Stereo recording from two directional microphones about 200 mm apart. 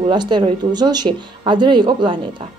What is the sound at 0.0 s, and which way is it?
Speech, 20° right (ahead or behind).